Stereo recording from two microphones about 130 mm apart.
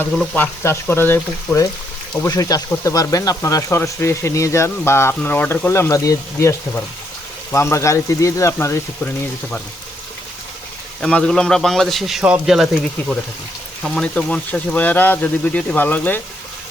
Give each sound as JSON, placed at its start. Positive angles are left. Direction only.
{"t": 0.3, "sound": "speech", "side_deg": 15}
{"t": 11.0, "sound": "speech", "side_deg": 10}